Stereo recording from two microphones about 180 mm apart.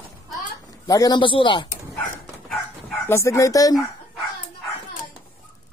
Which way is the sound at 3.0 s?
15° left (ahead or behind).